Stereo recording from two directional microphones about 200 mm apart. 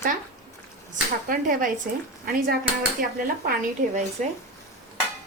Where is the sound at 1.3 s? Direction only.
40° right (ahead or behind).